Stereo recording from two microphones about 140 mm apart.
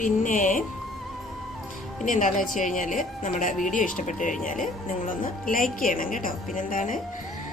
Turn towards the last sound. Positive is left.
turn(degrees=70)  # may be behind; listen again after turning